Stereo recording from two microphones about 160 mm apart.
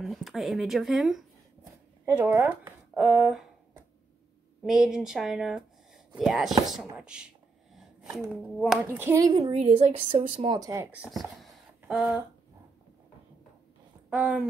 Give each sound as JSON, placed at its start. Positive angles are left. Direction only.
{"t": 0.0, "sound": "speech", "side_deg": 0}
{"t": 2.0, "sound": "speech", "side_deg": -15}
{"t": 3.0, "sound": "speech", "side_deg": 0}
{"t": 4.6, "sound": "speech", "side_deg": -5}
{"t": 8.8, "sound": "speech", "side_deg": -15}
{"t": 9.5, "sound": "a woman's voice", "side_deg": -40}
{"t": 10.6, "sound": "speech", "side_deg": -20}
{"t": 14.1, "sound": "speech", "side_deg": -5}